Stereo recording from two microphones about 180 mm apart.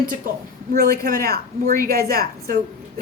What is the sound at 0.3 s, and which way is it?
A woman's voice, 50° right (ahead or behind).